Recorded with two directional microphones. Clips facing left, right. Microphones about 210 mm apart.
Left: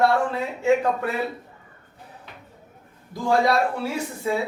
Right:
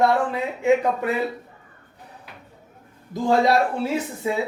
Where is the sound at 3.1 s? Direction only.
20° right (ahead or behind).